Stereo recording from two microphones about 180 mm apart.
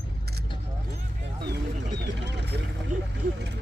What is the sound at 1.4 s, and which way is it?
Vehicle, 65° right (ahead or behind).